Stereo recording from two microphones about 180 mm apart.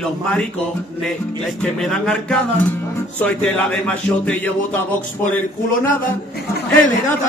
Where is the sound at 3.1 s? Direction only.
10° left (ahead or behind).